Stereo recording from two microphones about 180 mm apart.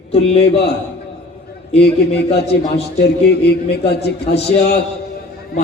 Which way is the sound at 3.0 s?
65° left (ahead or behind).